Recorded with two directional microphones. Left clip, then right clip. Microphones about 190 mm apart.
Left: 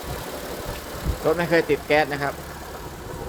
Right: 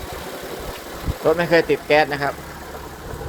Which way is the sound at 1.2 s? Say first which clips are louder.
Right 4 dB; centre (ahead or behind).